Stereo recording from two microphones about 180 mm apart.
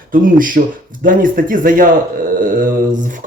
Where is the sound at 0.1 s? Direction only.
50° right (ahead or behind).